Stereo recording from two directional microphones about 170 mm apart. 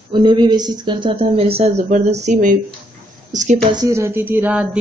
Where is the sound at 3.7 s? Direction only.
15° right (ahead or behind).